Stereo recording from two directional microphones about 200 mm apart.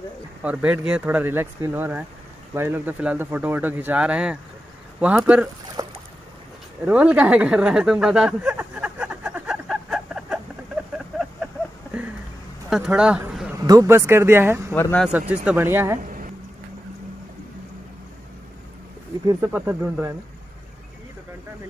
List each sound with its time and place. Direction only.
0.4 s speech: 5° right (ahead or behind)
5.8 s boat: 20° right (ahead or behind)
6.8 s a sound: 5° right (ahead or behind)
12.6 s speech: 5° right (ahead or behind)
13.7 s speech: 15° right (ahead or behind)
14.7 s speech: 5° left (ahead or behind)
15.1 s speech: 5° right (ahead or behind)
16.0 s a sound: 40° right (ahead or behind)
19.2 s speech: 10° right (ahead or behind)